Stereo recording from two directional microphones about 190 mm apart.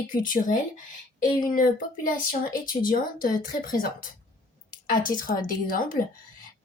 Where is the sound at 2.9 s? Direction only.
45° left (ahead or behind).